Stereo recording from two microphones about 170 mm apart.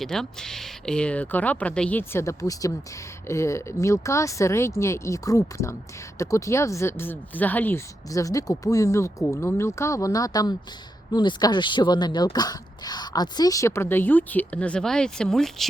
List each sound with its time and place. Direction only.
0.0 s speech: 5° left (ahead or behind)